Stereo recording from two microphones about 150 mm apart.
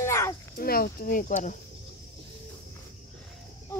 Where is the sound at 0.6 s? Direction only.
85° left; by 1.5 s 55° left (ahead or behind).